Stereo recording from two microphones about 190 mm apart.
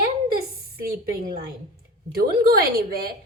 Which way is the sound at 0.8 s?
50° right (ahead or behind).